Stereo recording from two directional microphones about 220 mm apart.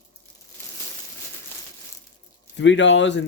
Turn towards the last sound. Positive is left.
turn(degrees=55)  # may be behind; listen again after turning